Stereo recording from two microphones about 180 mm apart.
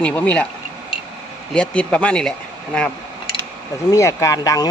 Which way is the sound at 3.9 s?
15° left (ahead or behind).